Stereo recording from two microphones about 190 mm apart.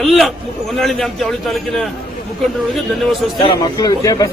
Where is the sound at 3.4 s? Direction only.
20° left (ahead or behind).